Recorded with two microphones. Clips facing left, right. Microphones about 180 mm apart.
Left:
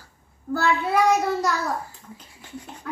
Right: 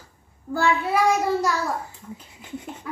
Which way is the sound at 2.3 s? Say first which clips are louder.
Right 3 dB; 20° right (ahead or behind).